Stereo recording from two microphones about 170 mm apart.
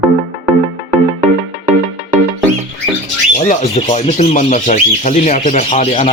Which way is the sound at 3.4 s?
45° left (ahead or behind).